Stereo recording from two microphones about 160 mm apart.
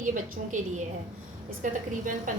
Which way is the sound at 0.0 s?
55° right (ahead or behind).